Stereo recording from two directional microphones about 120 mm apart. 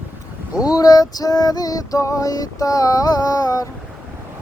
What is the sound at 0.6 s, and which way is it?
Female singing, 30° left (ahead or behind).